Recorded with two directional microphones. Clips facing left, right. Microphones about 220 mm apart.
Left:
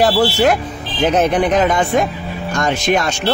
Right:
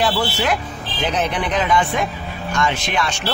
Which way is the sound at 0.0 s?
45° left (ahead or behind).